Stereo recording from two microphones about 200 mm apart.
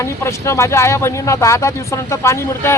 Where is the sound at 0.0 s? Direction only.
15° left (ahead or behind).